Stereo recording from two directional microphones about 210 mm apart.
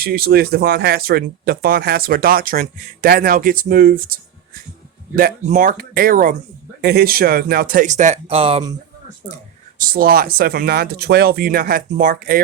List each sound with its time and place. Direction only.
0.0 s speech: 45° right (ahead or behind); by 8.7 s 25° right (ahead or behind)
9.7 s speech: 45° right (ahead or behind)